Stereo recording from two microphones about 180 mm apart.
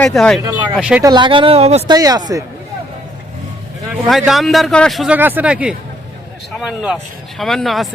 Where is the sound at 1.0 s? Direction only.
25° right (ahead or behind).